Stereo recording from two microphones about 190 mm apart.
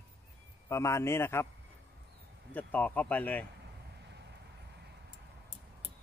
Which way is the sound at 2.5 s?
10° left (ahead or behind).